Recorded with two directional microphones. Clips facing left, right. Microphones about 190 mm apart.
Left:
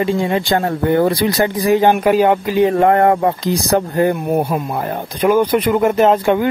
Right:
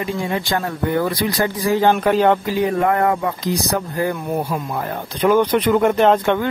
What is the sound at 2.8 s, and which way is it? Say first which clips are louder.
Speech: left 5 dB; 30° left (ahead or behind).